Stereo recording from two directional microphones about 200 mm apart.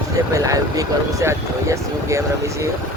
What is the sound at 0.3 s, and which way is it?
Speech, 15° right (ahead or behind).